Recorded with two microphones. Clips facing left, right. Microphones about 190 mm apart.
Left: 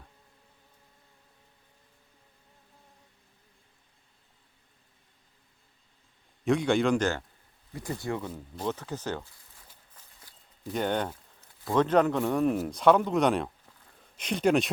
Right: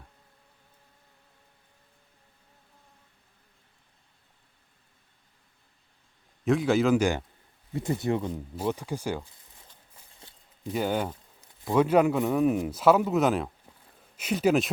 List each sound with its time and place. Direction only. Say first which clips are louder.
6.4 s a man's voice: right 1 dB; centre (ahead or behind)
7.7 s speech: right 6 dB; 25° right (ahead or behind)
10.2 s a sound: right 3 dB; 25° right (ahead or behind)
10.7 s a man's voice: right 1 dB; 5° right (ahead or behind)